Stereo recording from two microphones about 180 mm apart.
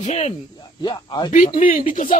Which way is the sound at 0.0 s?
40° left (ahead or behind).